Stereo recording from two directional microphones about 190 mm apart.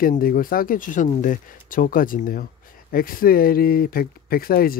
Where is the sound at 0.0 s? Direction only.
50° left (ahead or behind).